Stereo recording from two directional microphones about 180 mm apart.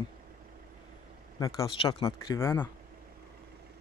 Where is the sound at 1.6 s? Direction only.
30° left (ahead or behind).